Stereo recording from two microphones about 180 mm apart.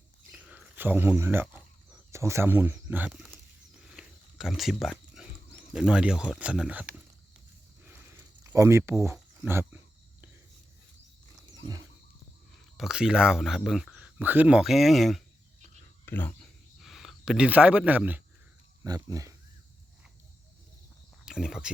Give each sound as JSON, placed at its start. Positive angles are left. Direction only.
{"t": 0.3, "sound": "a sound", "side_deg": -5}
{"t": 5.7, "sound": "speech", "side_deg": -5}
{"t": 7.9, "sound": "a sound", "side_deg": -15}
{"t": 11.5, "sound": "wild animals", "side_deg": -20}
{"t": 12.7, "sound": "speech", "side_deg": 0}
{"t": 16.8, "sound": "speech", "side_deg": 0}
{"t": 18.8, "sound": "speech", "side_deg": -20}
{"t": 21.2, "sound": "cricket", "side_deg": -5}